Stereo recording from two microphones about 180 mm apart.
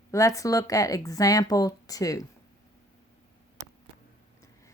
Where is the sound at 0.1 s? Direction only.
15° left (ahead or behind).